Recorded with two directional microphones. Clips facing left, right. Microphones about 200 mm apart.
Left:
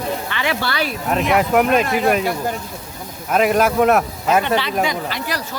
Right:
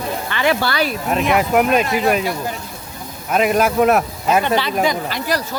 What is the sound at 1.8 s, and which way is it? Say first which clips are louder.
Speech: even; 50° left (ahead or behind).